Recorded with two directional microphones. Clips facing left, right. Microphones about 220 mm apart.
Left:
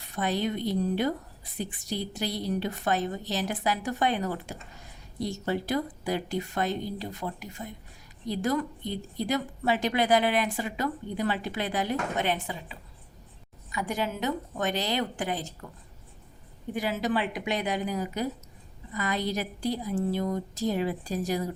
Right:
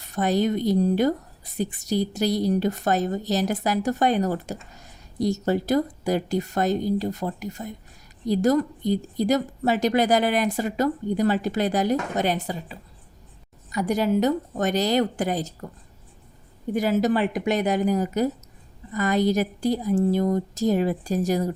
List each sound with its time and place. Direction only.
0.0 s a woman's voice: 45° right (ahead or behind)
16.7 s a woman's voice: 40° right (ahead or behind)